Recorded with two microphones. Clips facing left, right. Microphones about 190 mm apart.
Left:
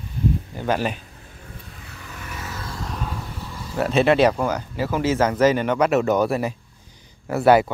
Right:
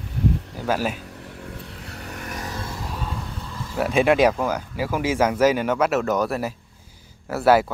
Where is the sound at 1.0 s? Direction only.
75° right (ahead or behind).